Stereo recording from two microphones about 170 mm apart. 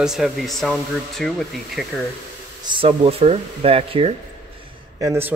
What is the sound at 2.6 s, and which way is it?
Speech, 30° right (ahead or behind).